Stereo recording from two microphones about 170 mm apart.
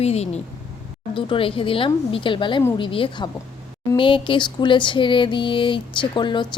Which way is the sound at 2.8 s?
30° left (ahead or behind).